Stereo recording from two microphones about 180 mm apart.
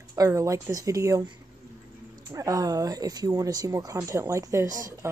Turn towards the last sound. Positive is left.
turn(degrees=-20)  # may be behind; listen again after turning